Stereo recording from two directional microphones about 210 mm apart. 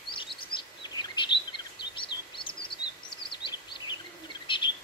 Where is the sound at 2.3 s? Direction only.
25° left (ahead or behind).